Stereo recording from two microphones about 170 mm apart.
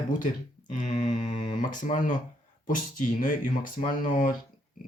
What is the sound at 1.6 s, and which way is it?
Speech, 50° left (ahead or behind).